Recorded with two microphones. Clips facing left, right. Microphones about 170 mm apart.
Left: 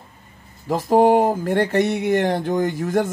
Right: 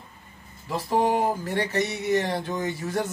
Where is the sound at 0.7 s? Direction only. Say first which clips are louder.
Left 8 dB; 45° left (ahead or behind).